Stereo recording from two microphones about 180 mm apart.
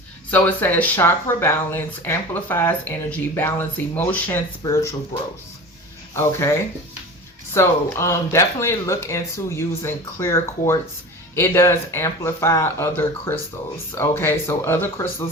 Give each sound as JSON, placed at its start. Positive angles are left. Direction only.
{"t": 0.3, "sound": "speech", "side_deg": 10}